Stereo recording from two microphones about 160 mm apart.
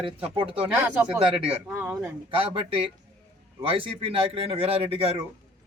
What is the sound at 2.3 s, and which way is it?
Speech, 35° right (ahead or behind).